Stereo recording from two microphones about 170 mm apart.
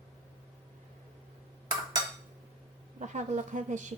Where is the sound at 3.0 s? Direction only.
45° right (ahead or behind).